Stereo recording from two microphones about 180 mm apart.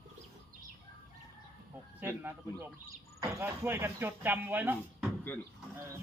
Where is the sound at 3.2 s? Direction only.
15° right (ahead or behind).